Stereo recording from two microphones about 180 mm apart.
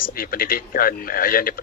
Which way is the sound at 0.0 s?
55° left (ahead or behind).